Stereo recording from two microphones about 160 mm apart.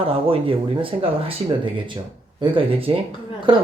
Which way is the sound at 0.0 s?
35° right (ahead or behind).